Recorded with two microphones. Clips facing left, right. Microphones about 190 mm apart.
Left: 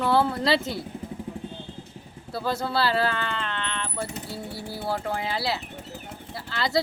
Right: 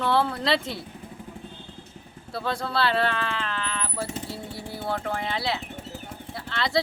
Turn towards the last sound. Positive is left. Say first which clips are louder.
# even
turn(degrees=0)  # may be behind; listen again after turning